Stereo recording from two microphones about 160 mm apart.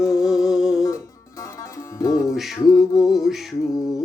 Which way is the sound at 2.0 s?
20° left (ahead or behind).